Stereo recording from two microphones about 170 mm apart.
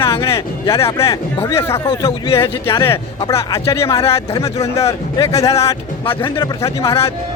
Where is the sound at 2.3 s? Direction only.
35° left (ahead or behind).